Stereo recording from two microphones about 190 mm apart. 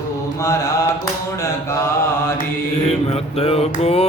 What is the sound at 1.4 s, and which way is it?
Mantra, 15° left (ahead or behind).